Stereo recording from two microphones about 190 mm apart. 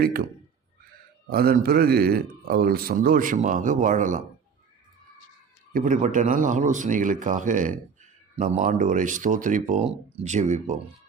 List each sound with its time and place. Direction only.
0.0 s a man's voice: 50° right (ahead or behind)
1.3 s a man's voice: 55° right (ahead or behind)
5.7 s a man's voice: 45° right (ahead or behind)